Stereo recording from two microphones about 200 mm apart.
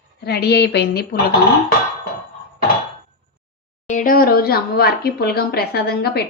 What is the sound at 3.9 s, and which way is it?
A woman's voice, 40° left (ahead or behind).